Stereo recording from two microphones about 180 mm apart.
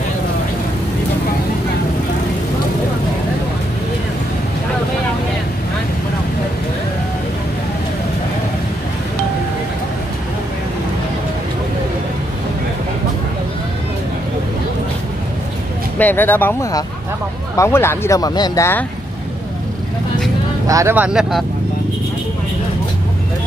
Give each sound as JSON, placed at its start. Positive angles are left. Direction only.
{"t": 16.0, "sound": "speech", "side_deg": 10}
{"t": 17.6, "sound": "speech", "side_deg": 15}
{"t": 20.6, "sound": "speech", "side_deg": -15}